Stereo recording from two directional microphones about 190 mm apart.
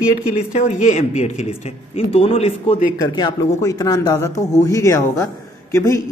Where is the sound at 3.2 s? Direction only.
20° left (ahead or behind).